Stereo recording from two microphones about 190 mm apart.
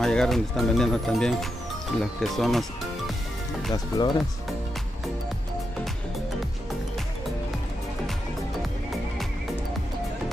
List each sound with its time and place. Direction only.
0.0 s speech: 5° left (ahead or behind)
3.7 s speech: 25° left (ahead or behind)